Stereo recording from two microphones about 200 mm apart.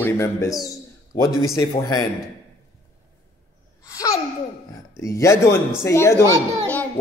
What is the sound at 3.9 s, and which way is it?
Babbling, 15° left (ahead or behind).